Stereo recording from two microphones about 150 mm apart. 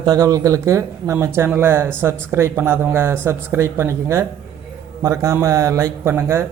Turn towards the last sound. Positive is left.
turn(degrees=-15)  # may be behind; listen again after turning